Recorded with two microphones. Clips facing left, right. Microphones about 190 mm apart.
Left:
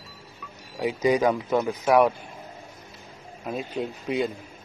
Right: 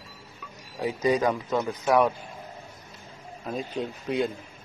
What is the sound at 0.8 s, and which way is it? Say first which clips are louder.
Speech: left 2 dB; 10° left (ahead or behind).